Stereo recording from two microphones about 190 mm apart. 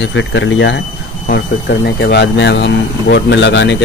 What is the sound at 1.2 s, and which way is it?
Speech, 55° left (ahead or behind).